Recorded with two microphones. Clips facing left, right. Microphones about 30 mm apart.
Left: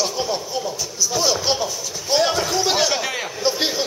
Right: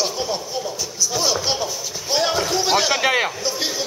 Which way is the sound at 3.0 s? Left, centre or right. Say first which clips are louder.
Right 7 dB; right.